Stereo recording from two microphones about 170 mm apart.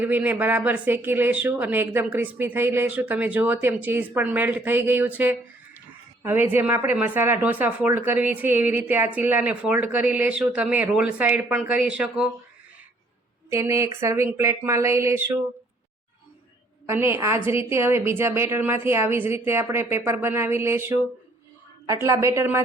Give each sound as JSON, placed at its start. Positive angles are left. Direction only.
{"t": 0.0, "sound": "speech", "side_deg": -10}
{"t": 13.5, "sound": "speech", "side_deg": -20}
{"t": 16.8, "sound": "speech", "side_deg": -15}
{"t": 22.0, "sound": "speech", "side_deg": -15}